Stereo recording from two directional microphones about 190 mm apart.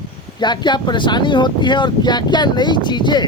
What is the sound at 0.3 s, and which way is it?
Speech, 25° left (ahead or behind).